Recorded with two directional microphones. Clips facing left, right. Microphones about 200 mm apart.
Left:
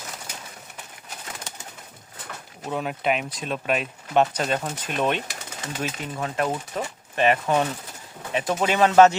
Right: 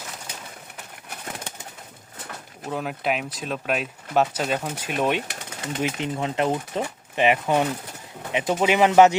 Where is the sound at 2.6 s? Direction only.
Centre (ahead or behind).